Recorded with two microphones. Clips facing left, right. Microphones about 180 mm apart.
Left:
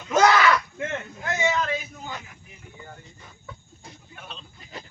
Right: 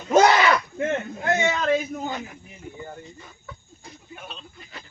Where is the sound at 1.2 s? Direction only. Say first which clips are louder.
Right 1 dB; 55° right (ahead or behind).